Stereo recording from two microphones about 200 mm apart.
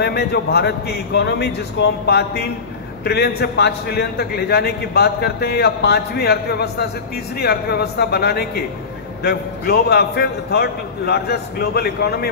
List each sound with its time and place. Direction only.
0.0 s a man's voice: 55° left (ahead or behind)